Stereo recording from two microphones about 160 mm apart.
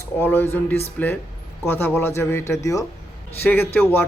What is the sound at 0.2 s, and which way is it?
Speech, 15° left (ahead or behind).